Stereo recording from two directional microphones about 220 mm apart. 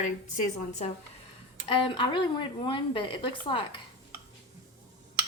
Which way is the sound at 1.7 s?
20° left (ahead or behind).